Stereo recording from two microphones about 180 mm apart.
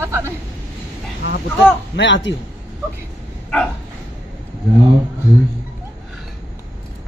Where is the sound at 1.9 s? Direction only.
80° left.